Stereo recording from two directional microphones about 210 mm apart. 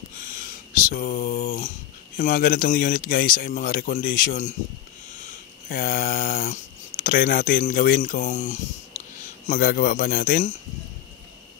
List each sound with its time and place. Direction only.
0.2 s a sound: 40° left (ahead or behind)
2.1 s speech: 40° left (ahead or behind)
5.7 s a man's voice: 45° left (ahead or behind)